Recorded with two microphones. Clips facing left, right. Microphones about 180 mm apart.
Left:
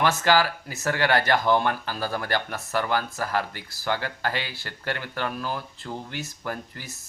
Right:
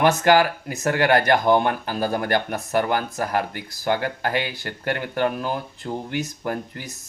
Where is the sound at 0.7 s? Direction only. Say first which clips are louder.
Right 4 dB; 15° right (ahead or behind).